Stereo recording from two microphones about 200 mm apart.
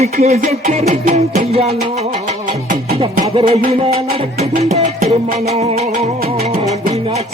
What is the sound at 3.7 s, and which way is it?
Music, 30° right (ahead or behind).